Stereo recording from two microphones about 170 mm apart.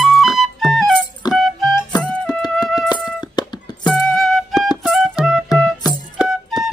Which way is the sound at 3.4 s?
25° left (ahead or behind).